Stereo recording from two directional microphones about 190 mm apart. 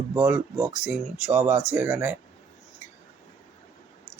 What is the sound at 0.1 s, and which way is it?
Speech, 10° right (ahead or behind).